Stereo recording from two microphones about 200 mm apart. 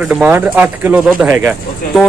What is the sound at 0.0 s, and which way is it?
Speech, 5° right (ahead or behind).